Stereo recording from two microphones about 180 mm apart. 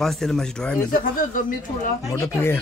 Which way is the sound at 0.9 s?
50° left (ahead or behind).